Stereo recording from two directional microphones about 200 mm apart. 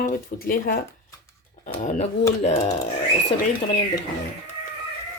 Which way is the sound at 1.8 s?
40° left (ahead or behind).